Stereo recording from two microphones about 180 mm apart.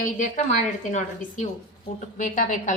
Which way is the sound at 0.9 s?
45° left (ahead or behind).